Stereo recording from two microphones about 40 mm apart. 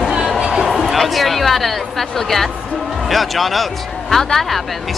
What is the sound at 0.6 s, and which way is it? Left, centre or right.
Speech, centre.